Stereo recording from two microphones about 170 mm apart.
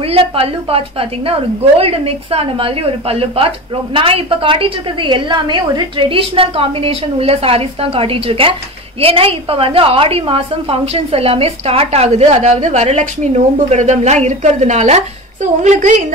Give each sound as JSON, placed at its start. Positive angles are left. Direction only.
{"t": 0.0, "sound": "a woman's voice", "side_deg": -35}